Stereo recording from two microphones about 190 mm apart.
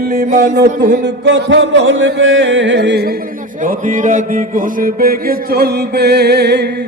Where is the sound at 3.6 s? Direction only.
45° right (ahead or behind); by 6.7 s 60° right (ahead or behind).